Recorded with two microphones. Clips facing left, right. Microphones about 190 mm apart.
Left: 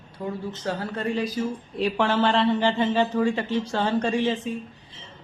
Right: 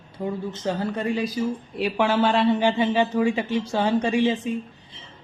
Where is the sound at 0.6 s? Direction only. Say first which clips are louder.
Right 3 dB; 20° right (ahead or behind).